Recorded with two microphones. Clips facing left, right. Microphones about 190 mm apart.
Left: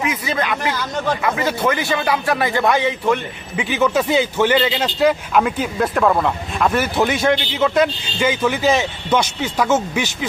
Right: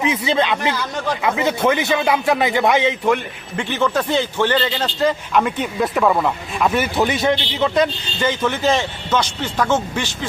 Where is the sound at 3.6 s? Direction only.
5° left (ahead or behind).